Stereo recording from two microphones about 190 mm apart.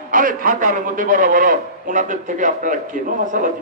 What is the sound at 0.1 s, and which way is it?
A man's voice, 45° right (ahead or behind).